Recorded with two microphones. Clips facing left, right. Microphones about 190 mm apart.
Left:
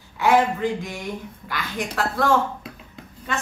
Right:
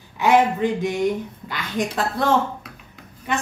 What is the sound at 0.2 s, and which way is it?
A woman's voice, 20° right (ahead or behind).